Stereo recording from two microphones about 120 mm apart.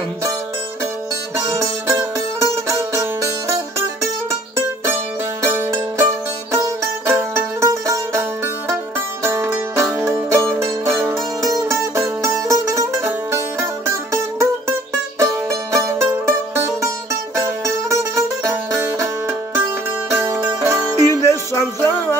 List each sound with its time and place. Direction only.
1.4 s music: 25° right (ahead or behind)
5.4 s music: 20° right (ahead or behind)
18.9 s music: 25° right (ahead or behind)
21.3 s music: 20° left (ahead or behind)